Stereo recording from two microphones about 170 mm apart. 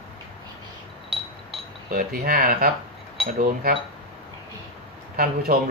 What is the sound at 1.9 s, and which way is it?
Speech, 60° right (ahead or behind).